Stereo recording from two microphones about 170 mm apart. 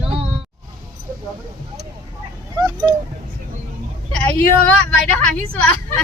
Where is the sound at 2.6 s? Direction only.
20° right (ahead or behind).